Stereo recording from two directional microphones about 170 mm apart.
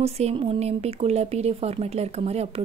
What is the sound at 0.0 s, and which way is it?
Speech, 35° right (ahead or behind).